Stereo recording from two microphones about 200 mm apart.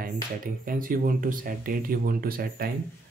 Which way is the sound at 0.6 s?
45° right (ahead or behind).